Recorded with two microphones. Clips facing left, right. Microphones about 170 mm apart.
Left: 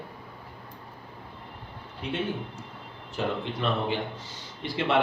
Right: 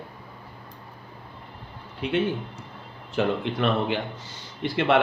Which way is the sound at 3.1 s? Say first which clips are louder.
Right 5 dB; 70° right (ahead or behind).